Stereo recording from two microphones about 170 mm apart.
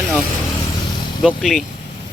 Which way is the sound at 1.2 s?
Centre (ahead or behind).